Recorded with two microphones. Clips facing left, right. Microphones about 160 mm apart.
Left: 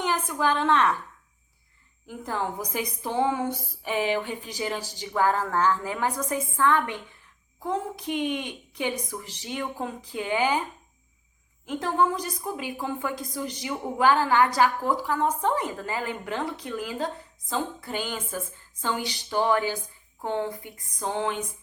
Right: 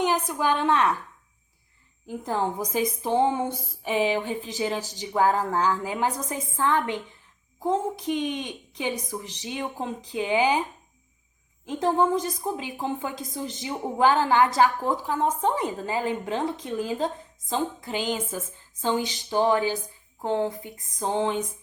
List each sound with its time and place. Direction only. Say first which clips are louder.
0.0 s a woman's voice: right 2 dB; 15° right (ahead or behind)
2.0 s a woman's voice: right 3 dB; 20° right (ahead or behind)
11.8 s a woman's voice: right 3 dB; 25° right (ahead or behind)